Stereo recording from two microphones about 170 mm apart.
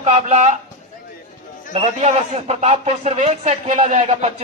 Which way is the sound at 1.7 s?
40° right (ahead or behind).